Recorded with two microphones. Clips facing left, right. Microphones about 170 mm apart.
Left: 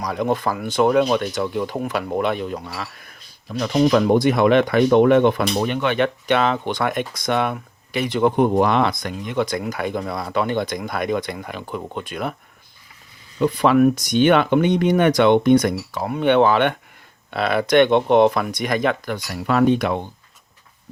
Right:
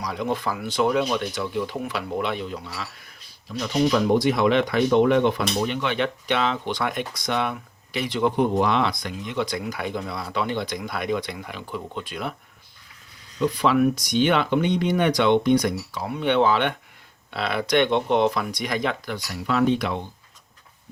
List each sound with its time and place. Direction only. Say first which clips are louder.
0.0 s speech: left 5 dB; 50° left (ahead or behind)
13.4 s speech: left 5 dB; 50° left (ahead or behind)